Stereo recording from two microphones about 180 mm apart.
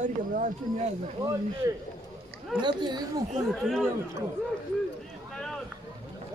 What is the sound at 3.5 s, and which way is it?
Speech, centre (ahead or behind).